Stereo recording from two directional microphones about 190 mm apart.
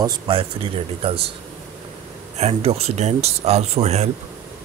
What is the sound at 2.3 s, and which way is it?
Speech, 35° right (ahead or behind).